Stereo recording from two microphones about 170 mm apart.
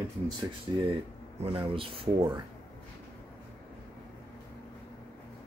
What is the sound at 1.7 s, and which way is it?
Speech, 35° right (ahead or behind).